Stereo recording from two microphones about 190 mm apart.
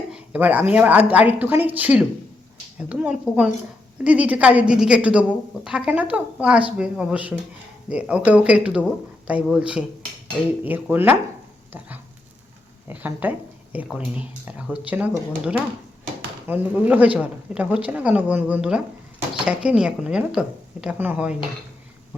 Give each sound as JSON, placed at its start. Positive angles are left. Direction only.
{"t": 0.1, "sound": "speech", "side_deg": -10}
{"t": 12.9, "sound": "speech", "side_deg": -10}